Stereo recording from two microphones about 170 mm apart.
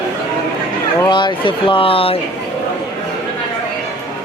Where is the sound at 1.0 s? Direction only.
25° left (ahead or behind).